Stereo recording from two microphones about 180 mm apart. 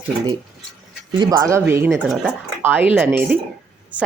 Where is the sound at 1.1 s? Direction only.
20° right (ahead or behind).